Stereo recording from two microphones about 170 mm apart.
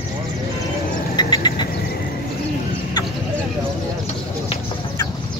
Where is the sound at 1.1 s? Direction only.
25° left (ahead or behind).